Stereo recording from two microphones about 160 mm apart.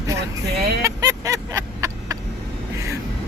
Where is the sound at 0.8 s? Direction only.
20° right (ahead or behind).